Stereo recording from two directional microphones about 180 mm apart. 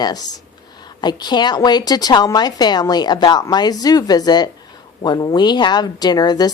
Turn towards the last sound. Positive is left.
turn(degrees=20)  # may be behind; listen again after turning